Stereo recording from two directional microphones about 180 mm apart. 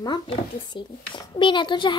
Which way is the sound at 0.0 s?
25° left (ahead or behind).